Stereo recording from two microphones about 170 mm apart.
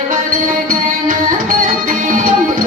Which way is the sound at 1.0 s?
55° right (ahead or behind).